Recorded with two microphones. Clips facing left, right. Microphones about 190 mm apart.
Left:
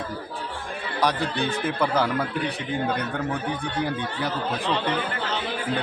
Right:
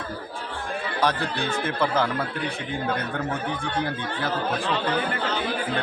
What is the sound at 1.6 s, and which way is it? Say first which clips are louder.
Speech: even; 15° left (ahead or behind).